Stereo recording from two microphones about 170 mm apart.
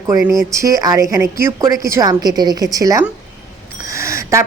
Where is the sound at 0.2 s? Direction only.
Centre (ahead or behind).